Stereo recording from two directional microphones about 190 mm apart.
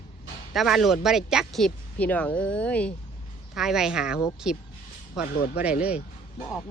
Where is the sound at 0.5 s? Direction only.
Centre (ahead or behind).